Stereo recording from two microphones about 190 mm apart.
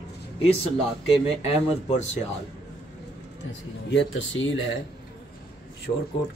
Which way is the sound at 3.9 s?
70° left (ahead or behind).